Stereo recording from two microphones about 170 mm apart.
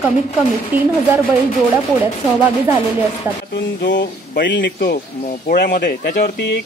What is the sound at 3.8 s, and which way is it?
Speech, 90° left.